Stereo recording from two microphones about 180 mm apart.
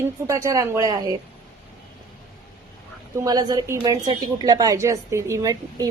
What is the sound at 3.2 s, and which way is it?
A woman's voice, 20° right (ahead or behind).